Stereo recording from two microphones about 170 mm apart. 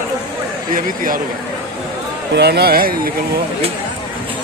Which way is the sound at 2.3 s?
75° right (ahead or behind).